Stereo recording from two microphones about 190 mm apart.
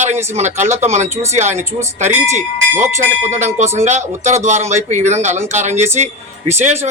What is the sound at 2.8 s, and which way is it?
Speech, 15° right (ahead or behind).